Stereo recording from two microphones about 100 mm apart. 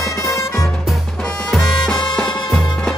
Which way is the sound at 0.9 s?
5° left (ahead or behind).